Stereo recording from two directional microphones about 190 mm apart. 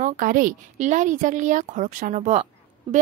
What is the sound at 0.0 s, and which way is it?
A woman's voice, 45° right (ahead or behind).